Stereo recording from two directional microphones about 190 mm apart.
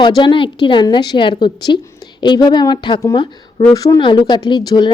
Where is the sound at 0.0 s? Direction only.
25° left (ahead or behind).